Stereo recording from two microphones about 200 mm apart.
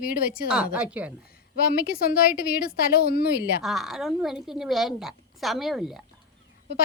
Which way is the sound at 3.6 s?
Centre (ahead or behind).